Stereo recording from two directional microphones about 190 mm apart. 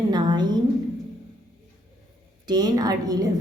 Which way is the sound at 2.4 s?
20° right (ahead or behind).